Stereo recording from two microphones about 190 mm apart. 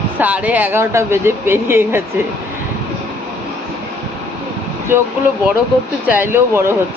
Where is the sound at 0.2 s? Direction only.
5° right (ahead or behind).